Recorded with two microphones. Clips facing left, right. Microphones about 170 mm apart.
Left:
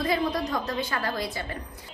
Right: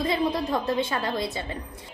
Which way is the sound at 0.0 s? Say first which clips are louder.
Right 1 dB; 25° right (ahead or behind).